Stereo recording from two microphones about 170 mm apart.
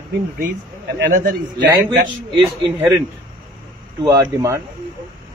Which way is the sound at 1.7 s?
15° right (ahead or behind).